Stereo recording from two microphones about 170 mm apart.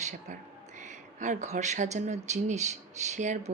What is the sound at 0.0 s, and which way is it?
Speech, 45° right (ahead or behind).